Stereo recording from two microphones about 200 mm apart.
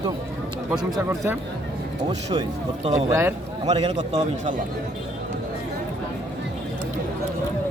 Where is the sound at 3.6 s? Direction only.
30° right (ahead or behind).